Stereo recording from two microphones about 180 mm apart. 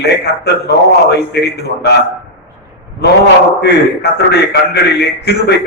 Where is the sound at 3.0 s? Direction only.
65° left (ahead or behind).